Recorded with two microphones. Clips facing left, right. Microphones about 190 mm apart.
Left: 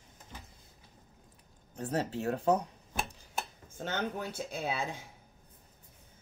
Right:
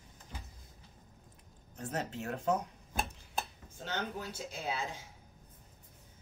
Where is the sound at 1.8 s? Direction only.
35° left (ahead or behind).